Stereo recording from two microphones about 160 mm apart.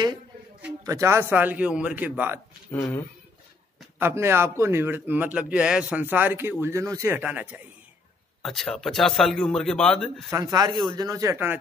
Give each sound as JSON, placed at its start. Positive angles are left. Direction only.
{"t": 0.8, "sound": "a man's voice", "side_deg": -20}
{"t": 2.7, "sound": "speech", "side_deg": 15}
{"t": 4.0, "sound": "a man's voice", "side_deg": -15}
{"t": 8.4, "sound": "speech", "side_deg": 0}
{"t": 10.3, "sound": "speech", "side_deg": -25}